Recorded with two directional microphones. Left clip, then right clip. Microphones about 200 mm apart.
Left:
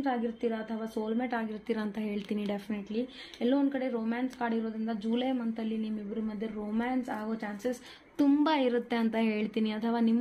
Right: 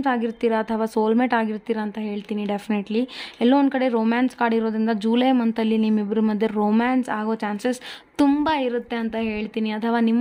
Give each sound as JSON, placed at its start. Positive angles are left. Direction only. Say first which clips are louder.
{"t": 0.0, "sound": "speech", "louder": "right 9 dB", "side_deg": -45}
{"t": 2.3, "sound": "speech", "louder": "right 10 dB", "side_deg": -30}
{"t": 2.7, "sound": "speech", "louder": "right 11 dB", "side_deg": -45}
{"t": 8.5, "sound": "a woman's voice", "louder": "right 6 dB", "side_deg": -15}